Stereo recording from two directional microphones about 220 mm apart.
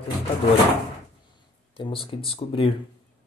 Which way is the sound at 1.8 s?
25° left (ahead or behind).